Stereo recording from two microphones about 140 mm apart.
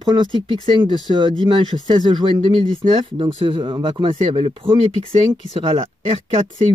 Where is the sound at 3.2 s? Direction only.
35° right (ahead or behind).